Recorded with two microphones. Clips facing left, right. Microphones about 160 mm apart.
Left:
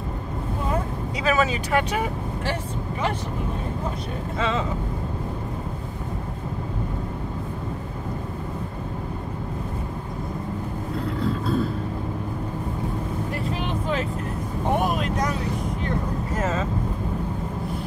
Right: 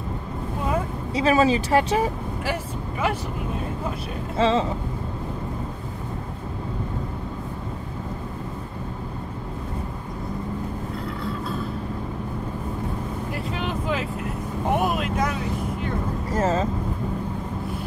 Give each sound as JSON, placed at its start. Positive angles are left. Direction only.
{"t": 1.1, "sound": "speech", "side_deg": -30}
{"t": 4.4, "sound": "speech", "side_deg": -30}
{"t": 13.3, "sound": "vehicle", "side_deg": 0}
{"t": 14.7, "sound": "speech", "side_deg": 0}
{"t": 16.3, "sound": "speech", "side_deg": -35}